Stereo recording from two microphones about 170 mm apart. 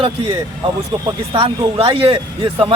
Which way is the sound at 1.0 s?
30° right (ahead or behind).